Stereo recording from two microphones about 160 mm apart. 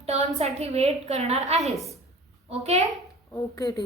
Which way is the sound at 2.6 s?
40° right (ahead or behind).